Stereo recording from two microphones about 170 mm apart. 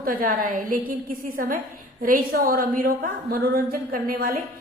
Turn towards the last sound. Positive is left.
turn(degrees=-55)  # may be behind; listen again after turning